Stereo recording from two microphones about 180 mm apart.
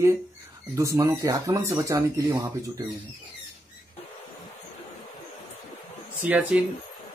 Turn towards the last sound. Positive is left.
turn(degrees=-5)  # may be behind; listen again after turning